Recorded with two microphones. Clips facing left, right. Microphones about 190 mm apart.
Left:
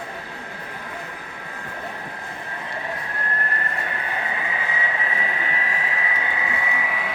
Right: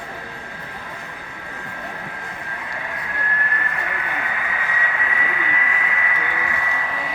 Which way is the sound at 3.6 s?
35° left (ahead or behind).